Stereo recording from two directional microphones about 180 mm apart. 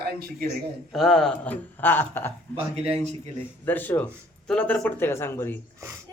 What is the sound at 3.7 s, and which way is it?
Speech, 10° left (ahead or behind).